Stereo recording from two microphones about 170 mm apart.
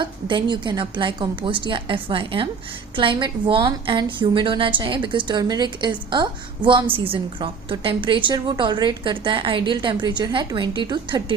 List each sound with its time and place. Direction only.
0.0 s a woman's voice: 25° right (ahead or behind)